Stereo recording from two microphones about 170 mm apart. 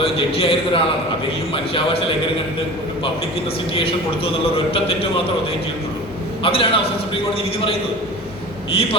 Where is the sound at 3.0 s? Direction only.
35° left (ahead or behind).